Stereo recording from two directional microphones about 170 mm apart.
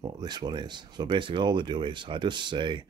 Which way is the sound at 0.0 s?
25° right (ahead or behind).